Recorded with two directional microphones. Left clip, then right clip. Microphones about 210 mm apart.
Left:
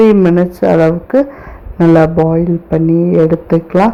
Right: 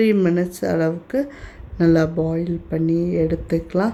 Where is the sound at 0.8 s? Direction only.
10° right (ahead or behind).